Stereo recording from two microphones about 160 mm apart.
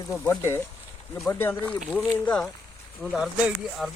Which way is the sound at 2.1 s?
5° left (ahead or behind).